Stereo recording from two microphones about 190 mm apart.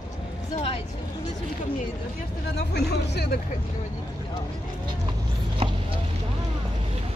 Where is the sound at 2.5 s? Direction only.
60° left (ahead or behind).